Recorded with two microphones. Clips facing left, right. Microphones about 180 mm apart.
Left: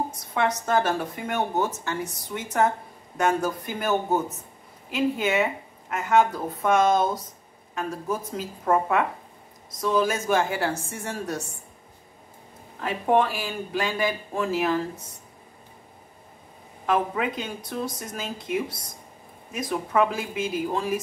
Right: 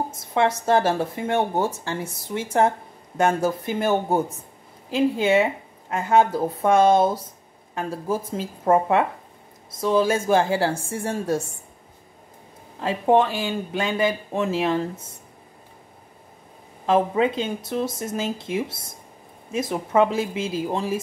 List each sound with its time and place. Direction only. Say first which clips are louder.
0.1 s speech: right 4 dB; 25° right (ahead or behind)
12.8 s speech: right 3 dB; 25° right (ahead or behind)
16.8 s speech: right 5 dB; 25° right (ahead or behind)